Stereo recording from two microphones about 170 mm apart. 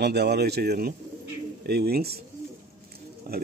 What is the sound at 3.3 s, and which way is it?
Speech, 65° right (ahead or behind).